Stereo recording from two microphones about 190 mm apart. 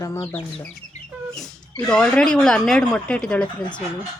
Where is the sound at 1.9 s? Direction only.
5° left (ahead or behind).